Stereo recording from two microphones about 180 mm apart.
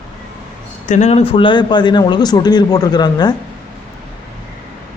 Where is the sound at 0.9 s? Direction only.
40° left (ahead or behind); by 3.4 s 25° left (ahead or behind).